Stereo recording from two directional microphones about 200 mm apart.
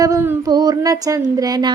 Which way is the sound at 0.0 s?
15° right (ahead or behind).